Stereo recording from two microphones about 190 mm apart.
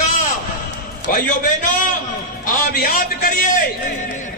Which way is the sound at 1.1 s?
45° left (ahead or behind).